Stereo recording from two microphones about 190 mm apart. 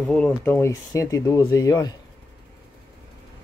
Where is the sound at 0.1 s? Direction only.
10° left (ahead or behind).